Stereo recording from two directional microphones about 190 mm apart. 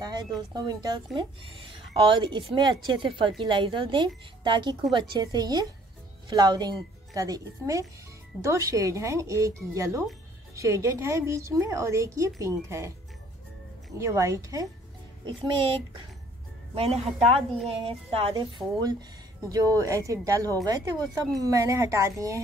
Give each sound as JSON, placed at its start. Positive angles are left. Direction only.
{"t": 0.0, "sound": "a woman's voice", "side_deg": -20}
{"t": 13.9, "sound": "a woman's voice", "side_deg": -15}